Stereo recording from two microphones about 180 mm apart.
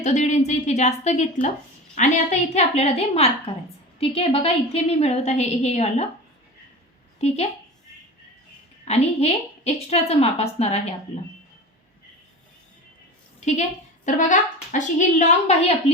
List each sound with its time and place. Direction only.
0.0 s a woman's voice: 40° left (ahead or behind)
7.2 s a woman's voice: 35° left (ahead or behind)
8.8 s a woman's voice: 35° left (ahead or behind)
13.4 s a woman's voice: 40° left (ahead or behind)